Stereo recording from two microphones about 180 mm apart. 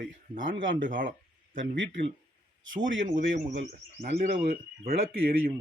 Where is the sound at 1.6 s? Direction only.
90° right.